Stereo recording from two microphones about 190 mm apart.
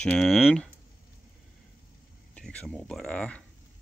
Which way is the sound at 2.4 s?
5° left (ahead or behind).